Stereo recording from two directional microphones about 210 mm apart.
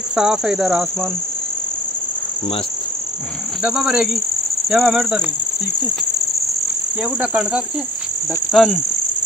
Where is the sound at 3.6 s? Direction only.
5° right (ahead or behind).